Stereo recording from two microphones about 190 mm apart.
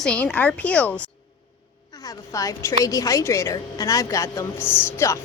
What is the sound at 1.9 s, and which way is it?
A woman's voice, 20° left (ahead or behind).